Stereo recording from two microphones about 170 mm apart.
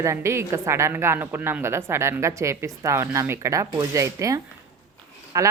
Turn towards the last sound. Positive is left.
turn(degrees=-20)  # may be behind; listen again after turning